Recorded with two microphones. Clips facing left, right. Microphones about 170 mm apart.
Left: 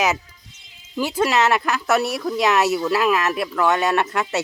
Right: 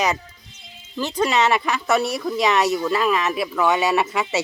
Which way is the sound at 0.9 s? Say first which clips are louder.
Left 1 dB; 10° left (ahead or behind).